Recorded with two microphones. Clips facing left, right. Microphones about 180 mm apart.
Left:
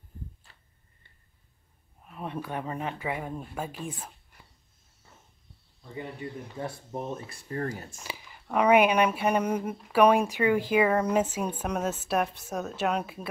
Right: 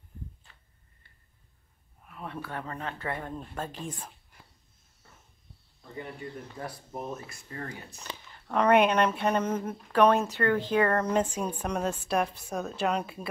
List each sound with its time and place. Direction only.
2.0 s speech: 20° left (ahead or behind)
6.6 s speech: 25° left (ahead or behind); by 8.0 s 45° left (ahead or behind)
8.0 s speech: 10° left (ahead or behind)